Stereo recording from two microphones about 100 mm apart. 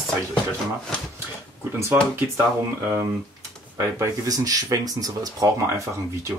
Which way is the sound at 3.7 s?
35° right (ahead or behind).